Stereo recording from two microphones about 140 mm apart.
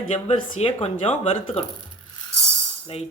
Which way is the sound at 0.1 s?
45° left (ahead or behind).